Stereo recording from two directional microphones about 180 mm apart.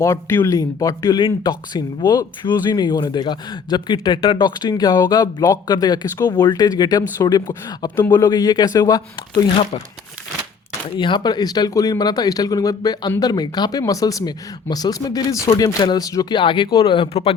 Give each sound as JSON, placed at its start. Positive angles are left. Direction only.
{"t": 0.0, "sound": "speech", "side_deg": 15}
{"t": 10.9, "sound": "speech", "side_deg": 25}